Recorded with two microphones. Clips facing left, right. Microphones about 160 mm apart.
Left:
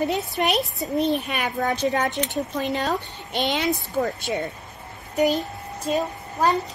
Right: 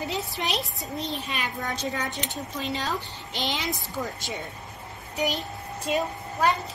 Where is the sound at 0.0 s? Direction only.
60° left (ahead or behind).